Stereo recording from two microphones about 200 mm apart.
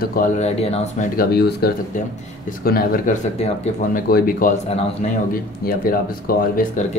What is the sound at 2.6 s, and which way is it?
Speech, 50° left (ahead or behind).